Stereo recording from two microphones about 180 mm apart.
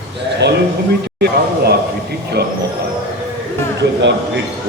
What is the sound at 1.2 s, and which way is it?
Speech, 65° right (ahead or behind).